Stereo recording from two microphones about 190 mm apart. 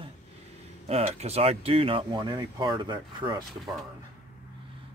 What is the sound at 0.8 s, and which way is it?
Speech, 35° right (ahead or behind).